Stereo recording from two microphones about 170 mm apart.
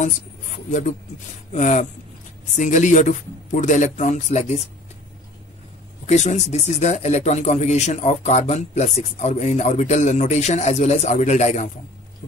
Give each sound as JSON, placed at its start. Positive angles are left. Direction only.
{"t": 0.7, "sound": "speech", "side_deg": 45}
{"t": 6.0, "sound": "speech", "side_deg": 40}